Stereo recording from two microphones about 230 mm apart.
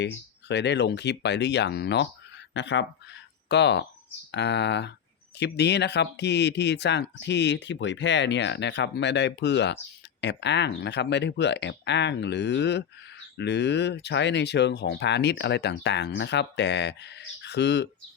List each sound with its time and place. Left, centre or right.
0.4 s speech: left